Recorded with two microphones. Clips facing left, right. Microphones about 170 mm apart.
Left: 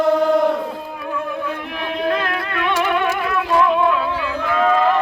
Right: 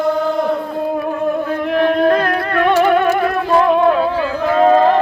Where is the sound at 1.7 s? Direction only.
50° right (ahead or behind).